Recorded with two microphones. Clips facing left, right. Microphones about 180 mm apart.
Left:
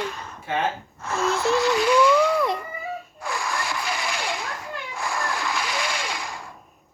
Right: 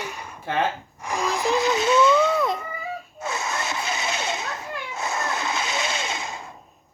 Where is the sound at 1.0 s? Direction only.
15° right (ahead or behind).